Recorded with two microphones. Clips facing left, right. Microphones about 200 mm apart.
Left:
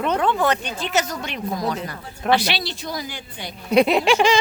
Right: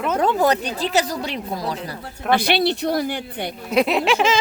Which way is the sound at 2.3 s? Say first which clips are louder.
Right 3 dB; 55° right (ahead or behind).